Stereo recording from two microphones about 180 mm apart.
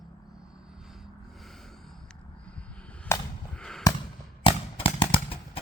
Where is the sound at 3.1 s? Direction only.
15° left (ahead or behind).